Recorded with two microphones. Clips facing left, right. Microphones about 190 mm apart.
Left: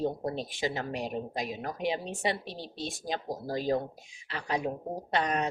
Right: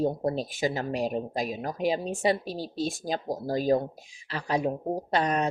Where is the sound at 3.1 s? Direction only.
35° right (ahead or behind).